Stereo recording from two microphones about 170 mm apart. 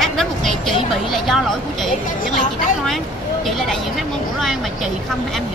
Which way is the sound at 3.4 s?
Centre (ahead or behind).